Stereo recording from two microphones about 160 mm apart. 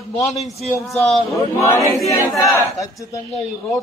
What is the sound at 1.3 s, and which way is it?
Speech, 20° left (ahead or behind).